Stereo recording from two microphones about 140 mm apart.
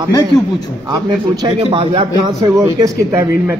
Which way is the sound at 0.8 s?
30° right (ahead or behind).